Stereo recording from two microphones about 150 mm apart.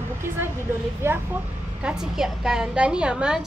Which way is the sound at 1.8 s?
5° right (ahead or behind).